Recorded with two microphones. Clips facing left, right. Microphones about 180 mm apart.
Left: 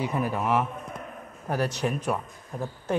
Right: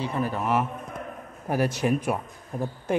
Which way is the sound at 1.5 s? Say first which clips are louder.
Right 3 dB; 10° right (ahead or behind).